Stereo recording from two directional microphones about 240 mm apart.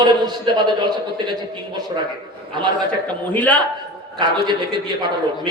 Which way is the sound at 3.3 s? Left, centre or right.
Centre.